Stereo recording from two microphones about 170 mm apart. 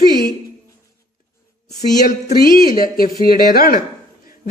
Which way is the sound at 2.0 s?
55° left (ahead or behind).